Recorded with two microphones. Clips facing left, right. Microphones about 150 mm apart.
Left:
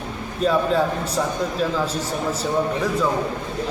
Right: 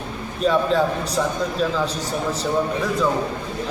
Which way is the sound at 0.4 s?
5° left (ahead or behind).